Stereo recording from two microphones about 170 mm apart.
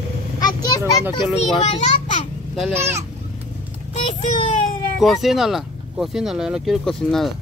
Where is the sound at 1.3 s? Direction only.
40° left (ahead or behind).